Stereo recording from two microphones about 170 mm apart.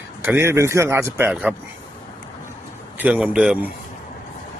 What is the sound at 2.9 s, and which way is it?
Speech, 10° right (ahead or behind).